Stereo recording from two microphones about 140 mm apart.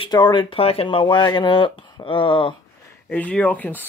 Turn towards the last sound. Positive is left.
turn(degrees=10)  # may be behind; listen again after turning